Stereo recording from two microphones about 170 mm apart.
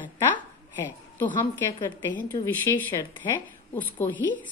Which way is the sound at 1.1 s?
15° left (ahead or behind).